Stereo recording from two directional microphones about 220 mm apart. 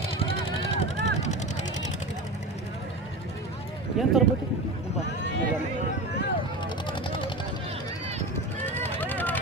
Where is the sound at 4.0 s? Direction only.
Centre (ahead or behind).